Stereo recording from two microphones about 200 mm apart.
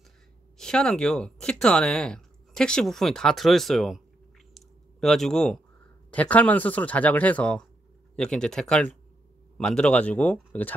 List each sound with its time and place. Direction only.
0.6 s speech: 5° left (ahead or behind)
4.6 s a sound: centre (ahead or behind)
6.0 s speech: 5° left (ahead or behind)